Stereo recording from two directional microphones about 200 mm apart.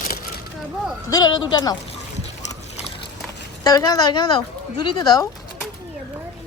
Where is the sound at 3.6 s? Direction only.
20° left (ahead or behind).